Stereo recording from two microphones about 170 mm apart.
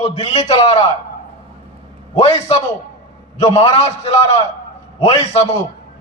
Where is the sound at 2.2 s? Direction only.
40° left (ahead or behind).